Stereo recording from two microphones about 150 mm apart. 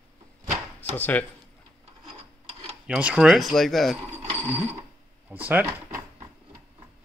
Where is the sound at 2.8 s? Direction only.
10° right (ahead or behind).